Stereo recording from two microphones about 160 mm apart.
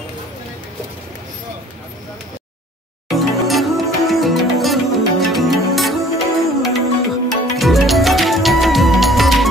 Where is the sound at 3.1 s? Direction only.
Centre (ahead or behind).